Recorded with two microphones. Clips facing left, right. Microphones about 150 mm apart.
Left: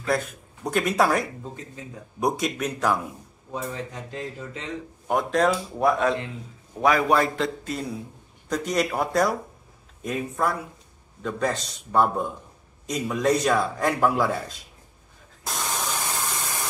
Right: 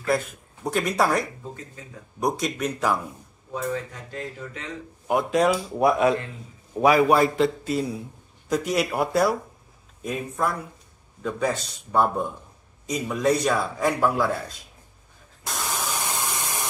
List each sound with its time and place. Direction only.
0.0 s a man's voice: centre (ahead or behind)
3.7 s speech: 25° left (ahead or behind)
5.0 s a man's voice: 5° right (ahead or behind)
15.4 s spray: centre (ahead or behind); by 16.6 s 15° right (ahead or behind)